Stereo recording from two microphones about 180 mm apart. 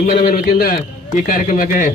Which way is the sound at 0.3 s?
50° left (ahead or behind).